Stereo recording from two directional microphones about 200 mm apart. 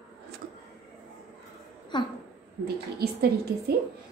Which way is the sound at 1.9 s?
20° left (ahead or behind).